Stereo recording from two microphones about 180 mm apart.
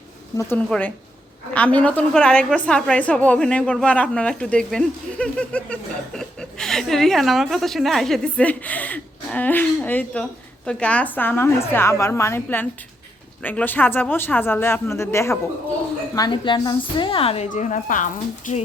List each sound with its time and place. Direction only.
0.3 s a woman's voice: 10° left (ahead or behind); by 18.6 s 45° left (ahead or behind)